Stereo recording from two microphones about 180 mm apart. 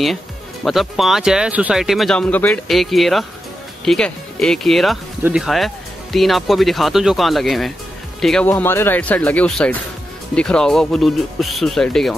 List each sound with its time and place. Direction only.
0.7 s speech: centre (ahead or behind)
8.5 s speech: 10° left (ahead or behind)